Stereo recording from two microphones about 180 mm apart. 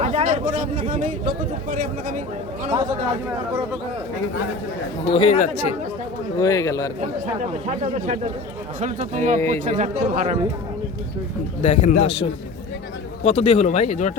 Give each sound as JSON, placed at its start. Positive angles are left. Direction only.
{"t": 0.0, "sound": "speech", "side_deg": -35}
{"t": 5.0, "sound": "speech", "side_deg": 30}
{"t": 6.4, "sound": "a man's voice", "side_deg": 20}
{"t": 7.3, "sound": "speech", "side_deg": -35}
{"t": 11.6, "sound": "speech", "side_deg": 40}